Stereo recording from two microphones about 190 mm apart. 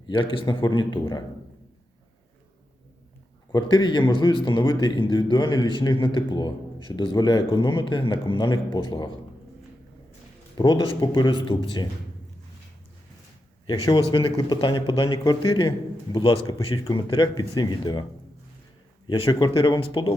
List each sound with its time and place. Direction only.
0.1 s speech: 25° left (ahead or behind)
3.5 s speech: 25° left (ahead or behind)
10.6 s speech: 25° left (ahead or behind)
14.1 s speech: 25° left (ahead or behind)
19.0 s speech: 25° left (ahead or behind)